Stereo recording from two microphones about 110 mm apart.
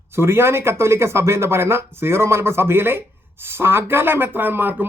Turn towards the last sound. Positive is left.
turn(degrees=-15)  # may be behind; listen again after turning